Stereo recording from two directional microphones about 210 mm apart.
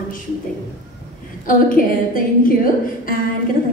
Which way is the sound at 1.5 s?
40° left (ahead or behind).